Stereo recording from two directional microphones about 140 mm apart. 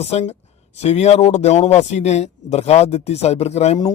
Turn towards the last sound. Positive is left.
turn(degrees=50)  # may be behind; listen again after turning